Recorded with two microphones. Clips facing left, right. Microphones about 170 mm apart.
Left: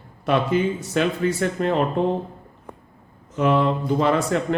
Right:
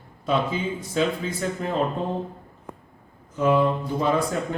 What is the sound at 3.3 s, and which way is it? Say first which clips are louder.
Speech: left 1 dB; 75° left (ahead or behind).